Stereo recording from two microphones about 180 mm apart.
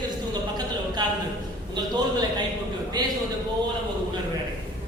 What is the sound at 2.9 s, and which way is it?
Speech, 20° right (ahead or behind).